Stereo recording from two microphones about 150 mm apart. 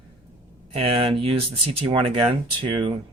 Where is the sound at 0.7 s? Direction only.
40° right (ahead or behind).